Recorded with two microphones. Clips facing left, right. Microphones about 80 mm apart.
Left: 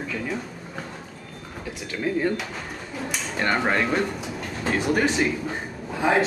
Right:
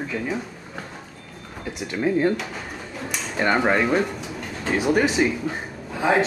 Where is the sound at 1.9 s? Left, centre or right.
Centre.